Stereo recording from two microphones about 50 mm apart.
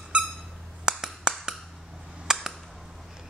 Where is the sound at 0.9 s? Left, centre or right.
Centre.